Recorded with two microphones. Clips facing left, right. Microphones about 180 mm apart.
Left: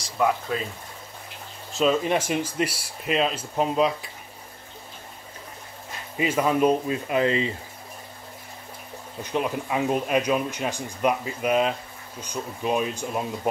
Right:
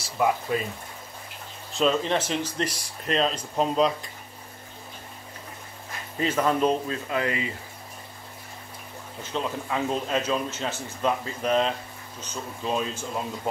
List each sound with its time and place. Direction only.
0.0 s speech: 5° right (ahead or behind)
1.7 s speech: 5° left (ahead or behind)
6.1 s speech: 10° left (ahead or behind); by 7.5 s 25° left (ahead or behind)
9.2 s speech: 15° left (ahead or behind)